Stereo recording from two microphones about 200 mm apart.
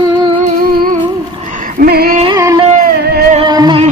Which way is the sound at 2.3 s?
15° right (ahead or behind).